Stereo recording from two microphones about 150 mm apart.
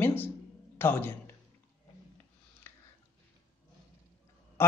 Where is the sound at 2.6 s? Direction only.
15° left (ahead or behind).